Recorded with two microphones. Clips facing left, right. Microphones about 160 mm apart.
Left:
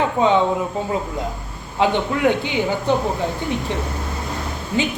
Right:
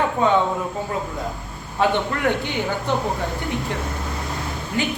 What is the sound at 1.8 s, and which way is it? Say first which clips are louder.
A man's voice: left 3 dB; 15° left (ahead or behind).